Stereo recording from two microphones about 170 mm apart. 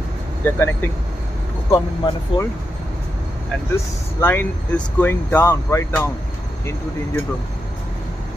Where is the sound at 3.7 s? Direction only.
15° left (ahead or behind).